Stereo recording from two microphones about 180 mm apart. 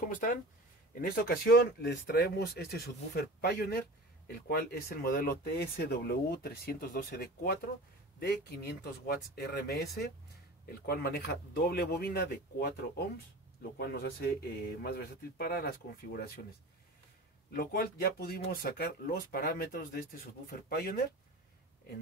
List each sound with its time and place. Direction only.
0.9 s speech: 55° left (ahead or behind)
17.5 s speech: 55° left (ahead or behind)